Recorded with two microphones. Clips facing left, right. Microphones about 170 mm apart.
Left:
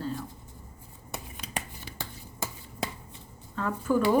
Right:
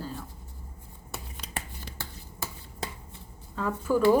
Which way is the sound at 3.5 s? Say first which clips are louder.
Left 1 dB; 10° right (ahead or behind).